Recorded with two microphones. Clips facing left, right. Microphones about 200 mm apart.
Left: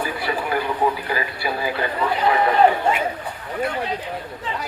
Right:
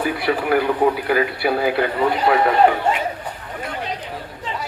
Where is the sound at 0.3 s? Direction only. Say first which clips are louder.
Right 6 dB; 65° right (ahead or behind).